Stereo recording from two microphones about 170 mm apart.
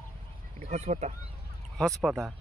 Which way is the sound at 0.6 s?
40° right (ahead or behind).